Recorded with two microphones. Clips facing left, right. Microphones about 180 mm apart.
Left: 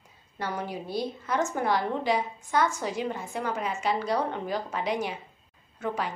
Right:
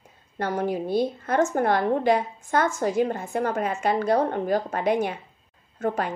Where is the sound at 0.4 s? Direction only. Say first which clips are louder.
Right 7 dB; 50° right (ahead or behind).